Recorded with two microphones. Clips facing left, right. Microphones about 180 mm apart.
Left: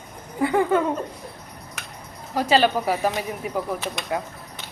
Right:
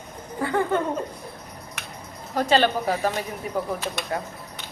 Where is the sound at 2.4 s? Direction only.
5° left (ahead or behind).